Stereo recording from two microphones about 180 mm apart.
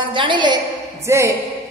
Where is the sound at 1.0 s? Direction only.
15° right (ahead or behind).